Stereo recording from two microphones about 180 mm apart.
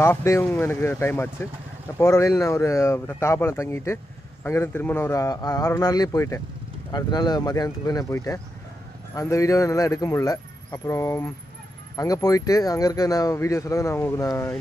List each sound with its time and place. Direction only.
0.0 s speech: 15° left (ahead or behind)